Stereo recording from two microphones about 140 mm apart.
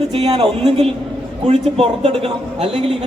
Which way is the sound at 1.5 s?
50° right (ahead or behind).